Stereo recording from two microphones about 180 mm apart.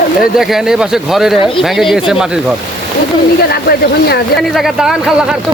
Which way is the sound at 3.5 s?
60° left (ahead or behind).